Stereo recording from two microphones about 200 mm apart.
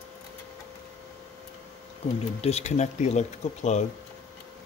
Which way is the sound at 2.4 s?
30° left (ahead or behind).